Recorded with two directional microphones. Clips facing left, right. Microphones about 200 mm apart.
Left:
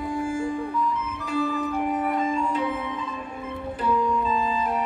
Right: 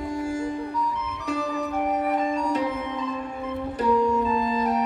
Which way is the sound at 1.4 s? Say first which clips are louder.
Left 3 dB; 40° right (ahead or behind).